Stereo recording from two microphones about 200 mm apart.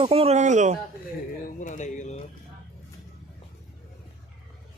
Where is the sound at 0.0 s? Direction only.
30° right (ahead or behind).